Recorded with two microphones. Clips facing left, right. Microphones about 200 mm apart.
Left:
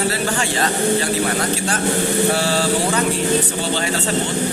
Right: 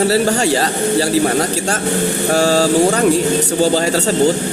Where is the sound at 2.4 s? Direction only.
40° right (ahead or behind).